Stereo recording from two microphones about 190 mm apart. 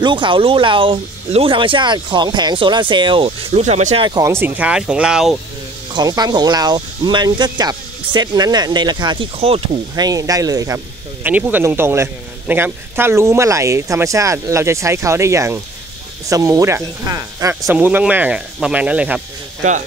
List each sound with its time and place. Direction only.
0.0 s speech: 25° right (ahead or behind); by 5.4 s 5° right (ahead or behind)
5.9 s speech: 20° right (ahead or behind)
10.0 s a man's voice: 20° right (ahead or behind)